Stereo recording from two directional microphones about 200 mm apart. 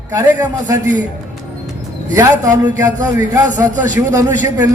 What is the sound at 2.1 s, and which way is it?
A man's voice, 15° right (ahead or behind).